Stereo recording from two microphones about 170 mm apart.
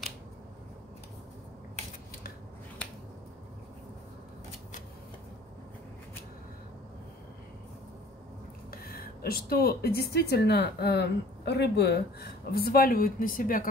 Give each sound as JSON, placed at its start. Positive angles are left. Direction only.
{"t": 8.6, "sound": "speech", "side_deg": 60}